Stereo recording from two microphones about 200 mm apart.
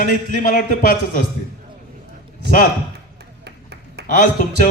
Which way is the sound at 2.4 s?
55° right (ahead or behind).